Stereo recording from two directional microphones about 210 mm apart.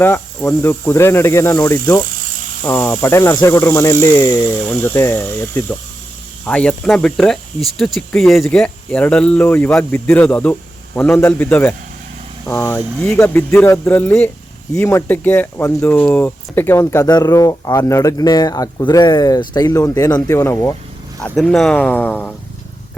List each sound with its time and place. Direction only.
0.0 s speech: 10° left (ahead or behind)
21.2 s speech: 5° left (ahead or behind)